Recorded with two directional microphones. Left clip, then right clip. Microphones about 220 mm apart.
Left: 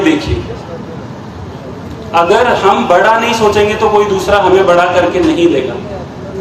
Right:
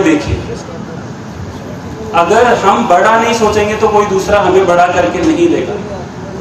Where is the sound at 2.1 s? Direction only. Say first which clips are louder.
Even; 40° left (ahead or behind).